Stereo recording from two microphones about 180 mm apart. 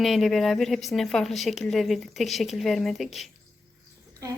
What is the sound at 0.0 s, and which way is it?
A woman's voice, centre (ahead or behind).